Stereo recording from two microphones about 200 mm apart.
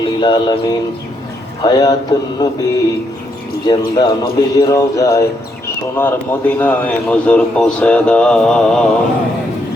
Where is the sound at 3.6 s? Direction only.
20° left (ahead or behind); by 8.8 s 5° left (ahead or behind).